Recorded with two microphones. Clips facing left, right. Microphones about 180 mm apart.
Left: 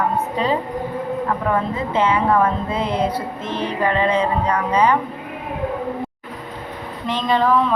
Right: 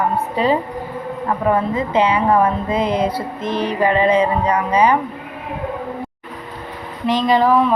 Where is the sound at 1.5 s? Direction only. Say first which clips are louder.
Right 3 dB; 15° right (ahead or behind).